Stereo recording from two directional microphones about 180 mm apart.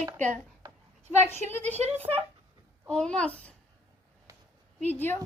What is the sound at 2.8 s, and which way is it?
Speech, 5° left (ahead or behind).